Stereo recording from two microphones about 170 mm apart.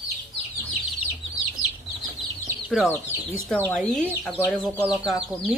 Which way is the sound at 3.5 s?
10° left (ahead or behind).